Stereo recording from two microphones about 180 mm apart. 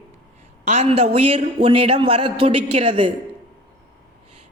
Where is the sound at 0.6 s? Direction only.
35° right (ahead or behind).